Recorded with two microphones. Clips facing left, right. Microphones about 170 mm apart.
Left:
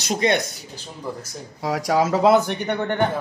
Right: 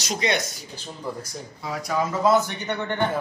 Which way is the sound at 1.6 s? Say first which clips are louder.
Left 6 dB; 90° left.